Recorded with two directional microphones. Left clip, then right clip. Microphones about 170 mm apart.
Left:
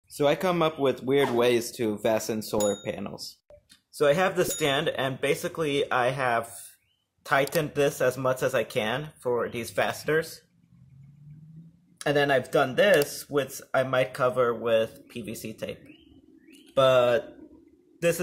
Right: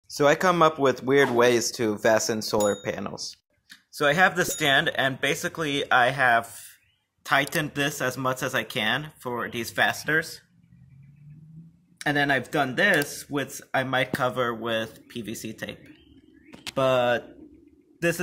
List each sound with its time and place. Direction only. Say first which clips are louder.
0.1 s speech: right 4 dB; 5° right (ahead or behind); by 10.4 s 15° left (ahead or behind)
12.0 s speech: even; 10° left (ahead or behind)